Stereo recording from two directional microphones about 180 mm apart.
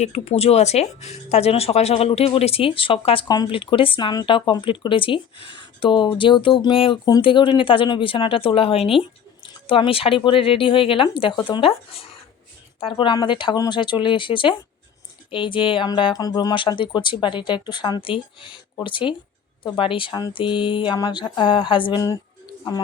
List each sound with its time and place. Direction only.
0.0 s speech: 40° left (ahead or behind); by 22.2 s 20° left (ahead or behind)